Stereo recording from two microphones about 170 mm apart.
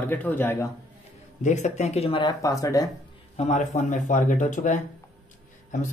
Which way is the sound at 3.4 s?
45° left (ahead or behind).